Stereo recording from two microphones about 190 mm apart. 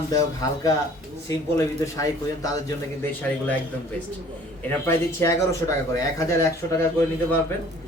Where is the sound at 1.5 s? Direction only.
15° left (ahead or behind).